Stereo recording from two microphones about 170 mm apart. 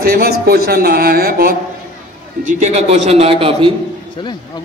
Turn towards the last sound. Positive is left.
turn(degrees=-35)  # may be behind; listen again after turning